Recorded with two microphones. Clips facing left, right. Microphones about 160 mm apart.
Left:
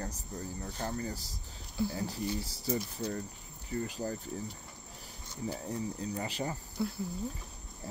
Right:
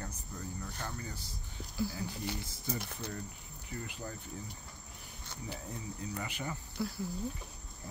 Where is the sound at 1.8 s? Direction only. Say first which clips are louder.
Left 3 dB; 25° left (ahead or behind).